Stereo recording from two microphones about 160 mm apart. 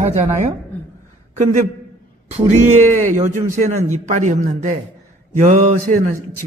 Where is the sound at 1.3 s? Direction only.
45° right (ahead or behind).